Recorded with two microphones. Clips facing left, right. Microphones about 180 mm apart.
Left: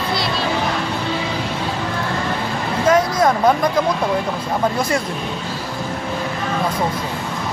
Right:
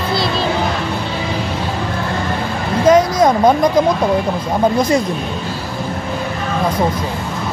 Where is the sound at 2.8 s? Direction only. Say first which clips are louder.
Right 4 dB; 20° right (ahead or behind).